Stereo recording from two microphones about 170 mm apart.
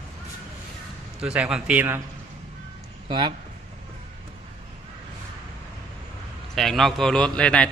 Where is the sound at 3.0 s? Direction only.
25° right (ahead or behind).